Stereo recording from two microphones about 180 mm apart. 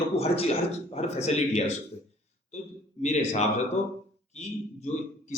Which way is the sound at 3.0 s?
40° left (ahead or behind).